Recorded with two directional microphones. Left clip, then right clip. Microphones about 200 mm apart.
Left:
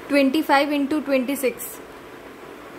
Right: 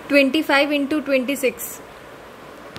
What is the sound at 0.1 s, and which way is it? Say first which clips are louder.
A woman's voice: right 2 dB; centre (ahead or behind).